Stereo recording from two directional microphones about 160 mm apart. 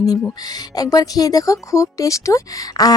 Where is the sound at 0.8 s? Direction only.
25° left (ahead or behind).